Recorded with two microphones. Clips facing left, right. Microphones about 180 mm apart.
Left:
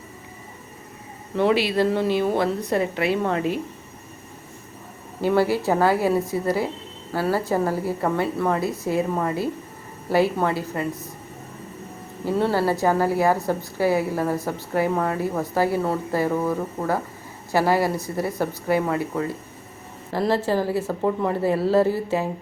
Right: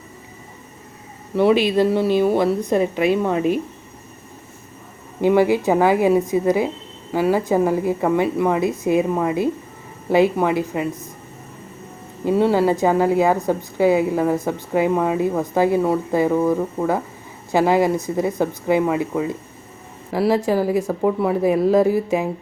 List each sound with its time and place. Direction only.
1.4 s a woman's voice: 15° right (ahead or behind)
5.2 s a woman's voice: 15° right (ahead or behind)
12.2 s a woman's voice: 15° right (ahead or behind)